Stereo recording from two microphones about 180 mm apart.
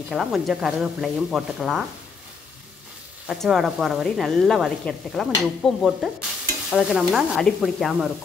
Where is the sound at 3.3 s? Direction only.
Centre (ahead or behind).